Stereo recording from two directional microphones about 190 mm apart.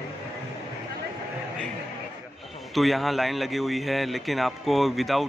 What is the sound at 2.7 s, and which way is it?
A man's voice, centre (ahead or behind).